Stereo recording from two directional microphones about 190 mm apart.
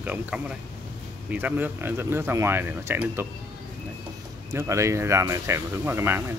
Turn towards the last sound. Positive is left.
turn(degrees=-10)  # may be behind; listen again after turning